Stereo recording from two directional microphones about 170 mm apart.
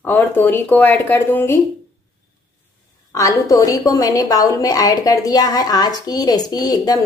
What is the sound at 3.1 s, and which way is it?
A woman's voice, 20° left (ahead or behind).